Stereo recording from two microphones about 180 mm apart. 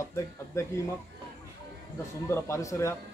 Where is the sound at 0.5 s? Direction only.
20° left (ahead or behind).